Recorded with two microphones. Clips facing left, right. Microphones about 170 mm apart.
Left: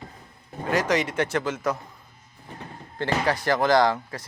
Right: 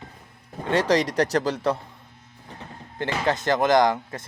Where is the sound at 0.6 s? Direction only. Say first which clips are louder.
Right 3 dB; 30° right (ahead or behind).